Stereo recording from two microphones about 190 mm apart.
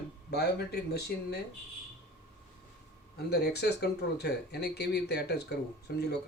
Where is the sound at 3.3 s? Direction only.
60° left (ahead or behind).